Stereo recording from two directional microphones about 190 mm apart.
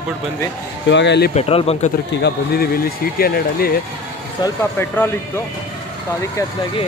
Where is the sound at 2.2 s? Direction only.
55° left (ahead or behind).